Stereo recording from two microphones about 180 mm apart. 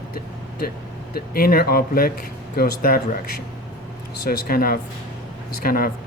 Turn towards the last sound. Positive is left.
turn(degrees=55)  # may be behind; listen again after turning